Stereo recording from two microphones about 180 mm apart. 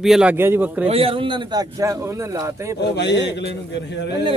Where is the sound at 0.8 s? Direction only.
30° right (ahead or behind); by 2.8 s 15° right (ahead or behind).